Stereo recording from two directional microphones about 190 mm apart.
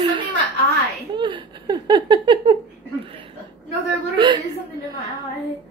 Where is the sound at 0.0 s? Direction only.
25° right (ahead or behind).